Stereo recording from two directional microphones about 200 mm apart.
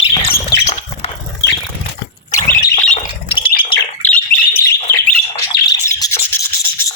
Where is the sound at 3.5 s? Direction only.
25° left (ahead or behind).